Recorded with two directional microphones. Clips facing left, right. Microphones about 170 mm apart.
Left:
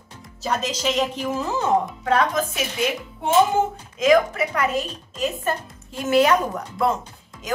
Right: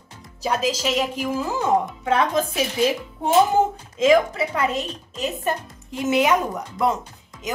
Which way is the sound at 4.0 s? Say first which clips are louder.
Even; 25° right (ahead or behind).